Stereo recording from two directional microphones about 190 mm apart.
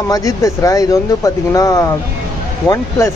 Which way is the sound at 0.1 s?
20° left (ahead or behind).